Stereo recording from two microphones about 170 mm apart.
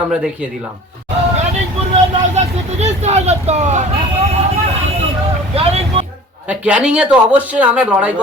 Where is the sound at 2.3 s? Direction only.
40° right (ahead or behind).